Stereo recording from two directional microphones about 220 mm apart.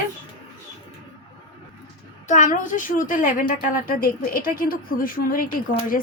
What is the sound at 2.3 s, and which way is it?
A woman's voice, 35° left (ahead or behind).